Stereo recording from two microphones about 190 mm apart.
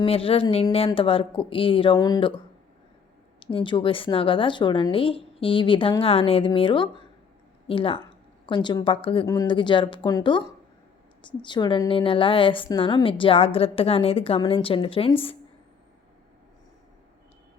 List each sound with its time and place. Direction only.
0.0 s a woman's voice: 30° left (ahead or behind)
3.4 s a woman's voice: 25° left (ahead or behind)